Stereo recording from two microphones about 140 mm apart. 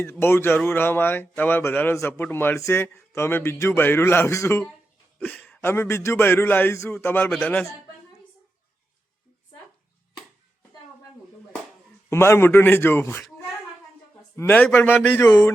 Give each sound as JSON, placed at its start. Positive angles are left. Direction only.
{"t": 0.0, "sound": "speech", "side_deg": 15}
{"t": 5.2, "sound": "a sound", "side_deg": 15}
{"t": 5.6, "sound": "speech", "side_deg": 20}
{"t": 12.1, "sound": "speech", "side_deg": 20}
{"t": 14.3, "sound": "speech", "side_deg": 10}
{"t": 15.3, "sound": "a sound", "side_deg": 25}